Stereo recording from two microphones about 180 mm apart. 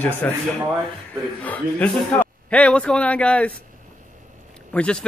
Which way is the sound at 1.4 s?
10° left (ahead or behind).